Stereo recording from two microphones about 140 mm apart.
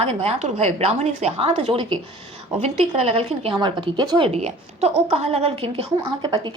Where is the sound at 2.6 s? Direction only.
50° right (ahead or behind).